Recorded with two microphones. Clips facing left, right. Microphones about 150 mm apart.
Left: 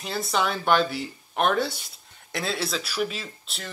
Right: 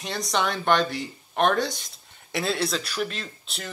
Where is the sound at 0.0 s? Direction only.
5° left (ahead or behind).